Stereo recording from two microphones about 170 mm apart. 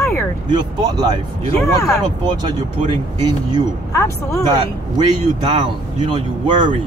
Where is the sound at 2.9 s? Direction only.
25° right (ahead or behind).